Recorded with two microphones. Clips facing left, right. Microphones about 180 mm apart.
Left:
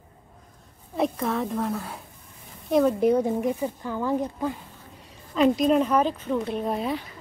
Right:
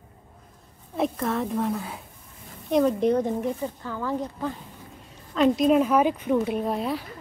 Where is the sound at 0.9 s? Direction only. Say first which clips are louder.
Even; centre (ahead or behind).